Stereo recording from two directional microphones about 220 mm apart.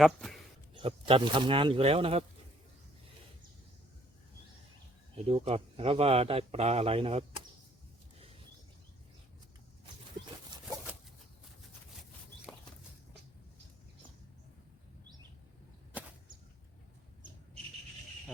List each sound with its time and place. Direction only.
0.0 s speech: centre (ahead or behind)
0.7 s speech: 25° right (ahead or behind)
5.1 s speech: 25° right (ahead or behind)